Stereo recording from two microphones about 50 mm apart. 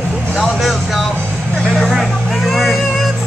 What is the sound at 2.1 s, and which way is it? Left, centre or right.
Vehicle, centre.